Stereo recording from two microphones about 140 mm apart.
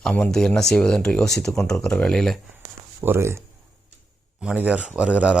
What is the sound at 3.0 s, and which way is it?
Speech, 15° right (ahead or behind).